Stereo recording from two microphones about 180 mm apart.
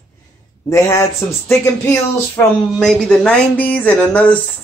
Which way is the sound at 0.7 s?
15° left (ahead or behind).